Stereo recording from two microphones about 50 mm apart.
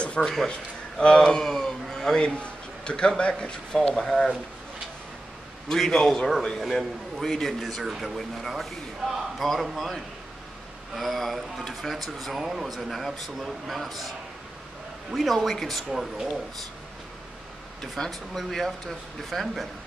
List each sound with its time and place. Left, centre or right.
0.0 s a sound: left
1.0 s speech: centre
2.2 s a man's voice: left
3.9 s a man's voice: centre
5.7 s a man's voice: centre
15.1 s a man's voice: centre
15.9 s speech: centre
18.0 s a man's voice: centre